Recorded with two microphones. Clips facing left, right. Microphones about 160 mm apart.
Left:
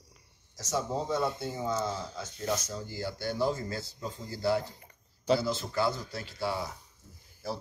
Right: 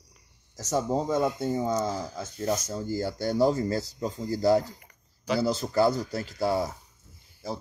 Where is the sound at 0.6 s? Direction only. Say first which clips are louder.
Right 5 dB; 50° right (ahead or behind).